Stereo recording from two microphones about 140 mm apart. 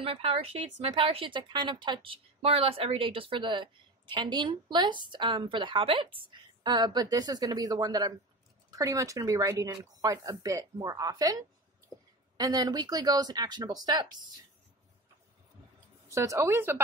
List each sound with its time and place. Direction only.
0.0 s speech: 40° right (ahead or behind)
16.1 s speech: 20° right (ahead or behind)